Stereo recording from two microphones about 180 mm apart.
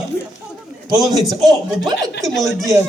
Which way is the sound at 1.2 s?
Centre (ahead or behind).